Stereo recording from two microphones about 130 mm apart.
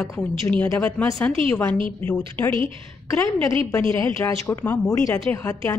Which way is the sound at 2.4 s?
15° left (ahead or behind).